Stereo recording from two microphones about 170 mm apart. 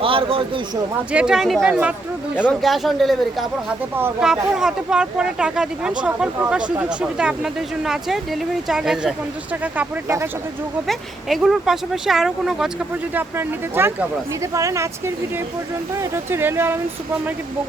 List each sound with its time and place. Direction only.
0.0 s a sound: 30° right (ahead or behind)
1.1 s speech: 5° right (ahead or behind)
10.8 s speech: centre (ahead or behind)